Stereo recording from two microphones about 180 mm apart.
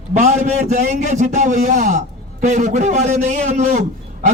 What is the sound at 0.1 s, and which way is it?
A man's voice, 45° right (ahead or behind).